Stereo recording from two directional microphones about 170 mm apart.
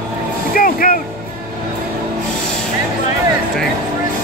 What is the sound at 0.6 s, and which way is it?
Music, 55° left (ahead or behind).